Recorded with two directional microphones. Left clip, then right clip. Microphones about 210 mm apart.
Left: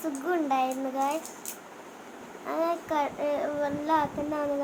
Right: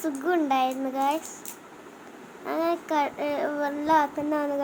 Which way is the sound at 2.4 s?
15° right (ahead or behind).